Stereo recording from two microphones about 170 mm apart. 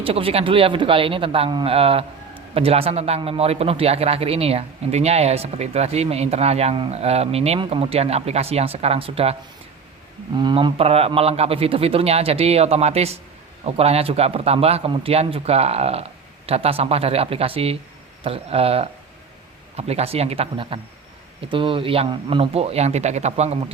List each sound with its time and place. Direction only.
0.0 s speech: 35° right (ahead or behind)
10.3 s speech: 30° right (ahead or behind)